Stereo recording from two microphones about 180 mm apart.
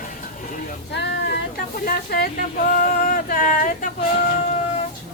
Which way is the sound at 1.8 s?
60° left (ahead or behind).